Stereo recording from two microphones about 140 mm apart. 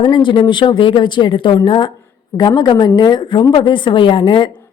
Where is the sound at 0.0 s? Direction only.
35° left (ahead or behind).